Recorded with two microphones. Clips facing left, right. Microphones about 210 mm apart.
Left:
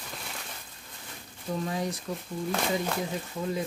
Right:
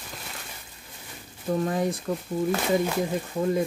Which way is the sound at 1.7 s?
55° right (ahead or behind).